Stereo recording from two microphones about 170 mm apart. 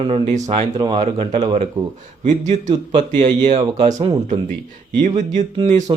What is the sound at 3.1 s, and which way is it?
Speech, 40° right (ahead or behind).